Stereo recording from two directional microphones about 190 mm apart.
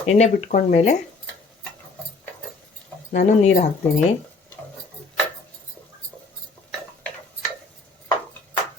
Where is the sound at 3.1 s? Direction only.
40° left (ahead or behind).